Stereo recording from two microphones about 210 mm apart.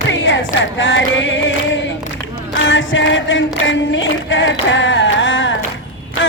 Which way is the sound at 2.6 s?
65° left (ahead or behind).